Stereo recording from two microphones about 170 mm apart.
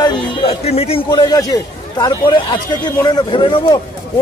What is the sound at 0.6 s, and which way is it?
A man's voice, 35° left (ahead or behind).